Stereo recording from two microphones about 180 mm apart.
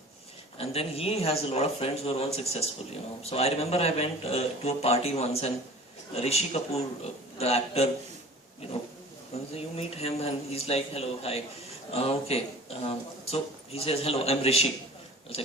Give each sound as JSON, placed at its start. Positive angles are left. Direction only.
{"t": 0.6, "sound": "speech", "side_deg": 35}
{"t": 9.3, "sound": "speech", "side_deg": 35}